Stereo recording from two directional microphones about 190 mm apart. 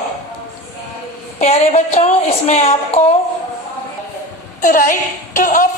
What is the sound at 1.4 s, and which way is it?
A woman's voice, 35° left (ahead or behind).